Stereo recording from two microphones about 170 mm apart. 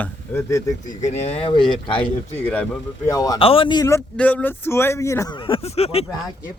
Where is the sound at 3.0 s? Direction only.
20° left (ahead or behind).